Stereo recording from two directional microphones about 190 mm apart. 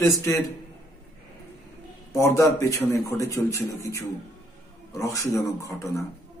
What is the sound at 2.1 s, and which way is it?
A man's voice, 15° left (ahead or behind).